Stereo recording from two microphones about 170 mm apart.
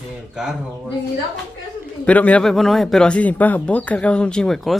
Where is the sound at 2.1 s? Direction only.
10° left (ahead or behind).